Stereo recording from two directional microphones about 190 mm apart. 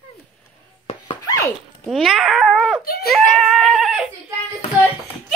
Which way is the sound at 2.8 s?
55° left (ahead or behind).